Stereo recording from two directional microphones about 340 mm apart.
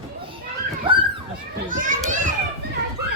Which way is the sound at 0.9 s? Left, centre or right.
Centre.